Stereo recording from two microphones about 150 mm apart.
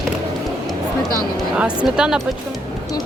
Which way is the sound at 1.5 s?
5° right (ahead or behind).